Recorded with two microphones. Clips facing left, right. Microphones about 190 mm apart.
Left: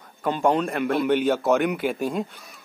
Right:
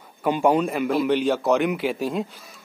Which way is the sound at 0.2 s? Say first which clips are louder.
Right 2 dB; 10° right (ahead or behind).